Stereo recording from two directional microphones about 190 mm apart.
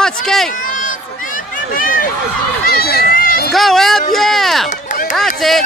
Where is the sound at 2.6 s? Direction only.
55° left (ahead or behind).